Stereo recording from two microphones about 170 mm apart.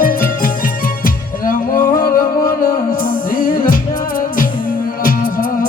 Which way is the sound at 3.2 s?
55° left (ahead or behind).